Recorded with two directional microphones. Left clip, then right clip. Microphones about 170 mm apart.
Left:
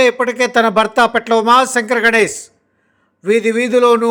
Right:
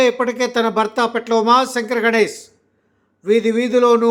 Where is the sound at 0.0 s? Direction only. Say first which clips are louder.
Left 3 dB; 25° left (ahead or behind).